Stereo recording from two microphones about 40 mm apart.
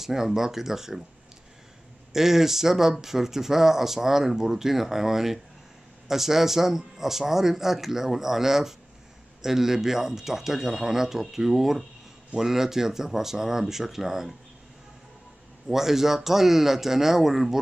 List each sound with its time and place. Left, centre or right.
0.0 s speech: centre
2.1 s speech: centre
15.7 s speech: centre